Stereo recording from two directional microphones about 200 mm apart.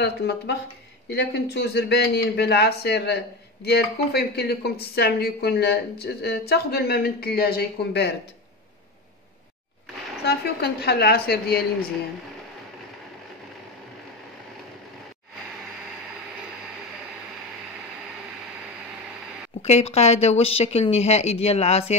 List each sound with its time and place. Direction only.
1.1 s speech: 55° left (ahead or behind)
10.2 s speech: 55° left (ahead or behind)
19.6 s speech: 30° left (ahead or behind)